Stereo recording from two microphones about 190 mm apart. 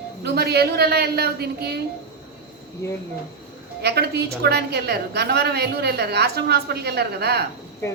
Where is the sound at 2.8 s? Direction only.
15° left (ahead or behind).